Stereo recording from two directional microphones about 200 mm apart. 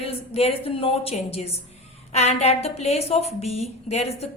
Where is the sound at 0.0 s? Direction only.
30° left (ahead or behind).